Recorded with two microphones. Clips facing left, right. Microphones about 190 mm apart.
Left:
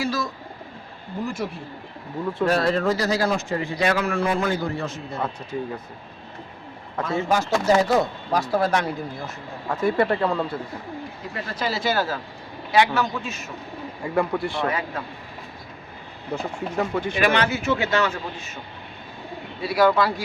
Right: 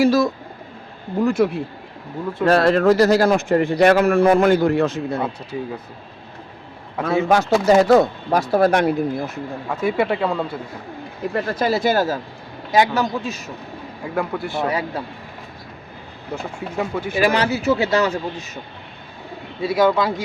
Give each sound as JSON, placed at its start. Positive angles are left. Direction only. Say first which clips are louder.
{"t": 1.2, "sound": "speech", "louder": "right 11 dB", "side_deg": -65}
{"t": 2.5, "sound": "a man's voice", "louder": "right 8 dB", "side_deg": -70}
{"t": 7.3, "sound": "a man's voice", "louder": "right 5 dB", "side_deg": -70}
{"t": 9.6, "sound": "speech", "louder": "even", "side_deg": -5}
{"t": 11.2, "sound": "a man's voice", "louder": "right 10 dB", "side_deg": -55}
{"t": 14.0, "sound": "speech", "louder": "left 1 dB", "side_deg": 0}
{"t": 14.7, "sound": "a man's voice", "louder": "right 4 dB", "side_deg": -35}
{"t": 16.3, "sound": "speech", "louder": "even", "side_deg": -10}
{"t": 17.2, "sound": "a man's voice", "louder": "right 4 dB", "side_deg": -35}
{"t": 19.6, "sound": "speech", "louder": "right 2 dB", "side_deg": -20}